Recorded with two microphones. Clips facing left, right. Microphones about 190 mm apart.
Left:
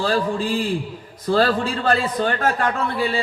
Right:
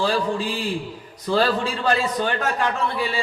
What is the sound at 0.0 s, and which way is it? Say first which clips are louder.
A man's voice: left 1 dB; 45° left (ahead or behind).